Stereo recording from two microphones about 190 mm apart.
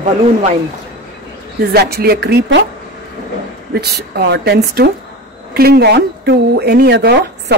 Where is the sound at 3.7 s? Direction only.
60° right (ahead or behind).